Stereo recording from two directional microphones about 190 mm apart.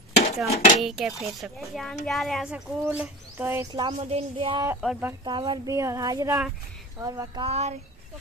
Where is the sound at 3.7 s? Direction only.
30° right (ahead or behind).